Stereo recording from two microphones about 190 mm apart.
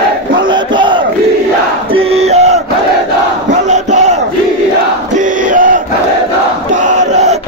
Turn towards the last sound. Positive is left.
turn(degrees=-35)  # may be behind; listen again after turning